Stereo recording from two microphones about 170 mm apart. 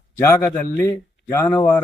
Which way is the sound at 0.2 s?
15° left (ahead or behind).